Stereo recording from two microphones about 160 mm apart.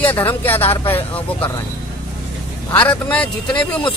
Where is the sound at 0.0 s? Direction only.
10° left (ahead or behind).